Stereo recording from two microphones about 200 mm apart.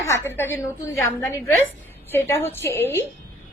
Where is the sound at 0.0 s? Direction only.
10° left (ahead or behind).